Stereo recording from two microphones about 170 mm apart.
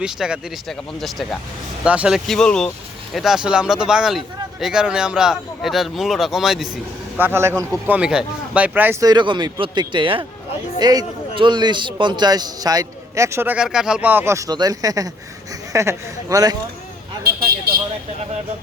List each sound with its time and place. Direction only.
0.0 s speech: 5° right (ahead or behind)
7.2 s a man's voice: 15° right (ahead or behind)